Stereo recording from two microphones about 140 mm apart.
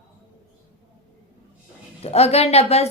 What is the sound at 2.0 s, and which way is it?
Speech, 50° left (ahead or behind).